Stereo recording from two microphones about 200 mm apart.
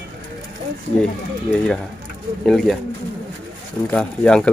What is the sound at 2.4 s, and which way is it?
Speech, centre (ahead or behind).